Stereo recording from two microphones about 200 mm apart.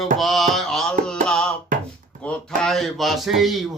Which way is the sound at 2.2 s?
5° left (ahead or behind).